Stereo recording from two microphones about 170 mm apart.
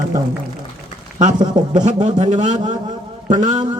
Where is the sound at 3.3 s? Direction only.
45° right (ahead or behind).